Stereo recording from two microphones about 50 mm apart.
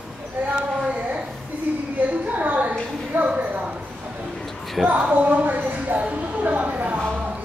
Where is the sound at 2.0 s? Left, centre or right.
Right.